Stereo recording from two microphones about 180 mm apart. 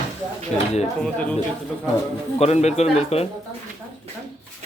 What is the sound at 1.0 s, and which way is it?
Speech, 5° left (ahead or behind).